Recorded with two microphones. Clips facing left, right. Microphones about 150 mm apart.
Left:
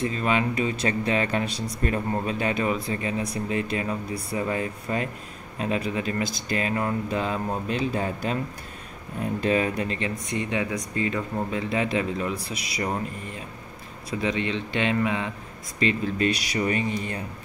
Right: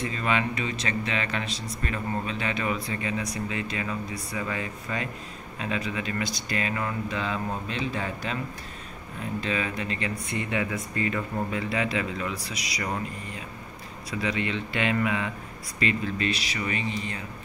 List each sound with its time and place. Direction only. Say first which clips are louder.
0.0 s speech: left 3 dB; 35° left (ahead or behind)
9.4 s speech: left 7 dB; 45° left (ahead or behind)
10.3 s speech: left 2 dB; 20° left (ahead or behind)
14.2 s speech: left 2 dB; 25° left (ahead or behind); by 17.2 s 50° left (ahead or behind)